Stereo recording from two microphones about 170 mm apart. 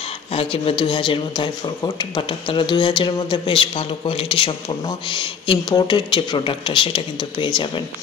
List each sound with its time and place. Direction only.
0.3 s speech: 35° left (ahead or behind)